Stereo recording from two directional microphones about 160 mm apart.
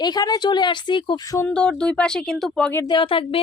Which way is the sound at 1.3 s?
10° left (ahead or behind).